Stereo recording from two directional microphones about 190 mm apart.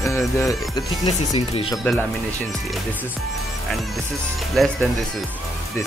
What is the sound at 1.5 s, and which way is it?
Speech, 30° left (ahead or behind).